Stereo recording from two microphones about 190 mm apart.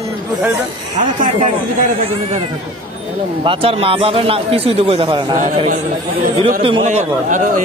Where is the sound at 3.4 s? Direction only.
30° right (ahead or behind).